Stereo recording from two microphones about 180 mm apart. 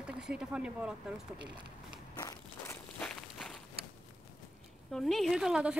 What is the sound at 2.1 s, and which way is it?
Walk, 20° left (ahead or behind).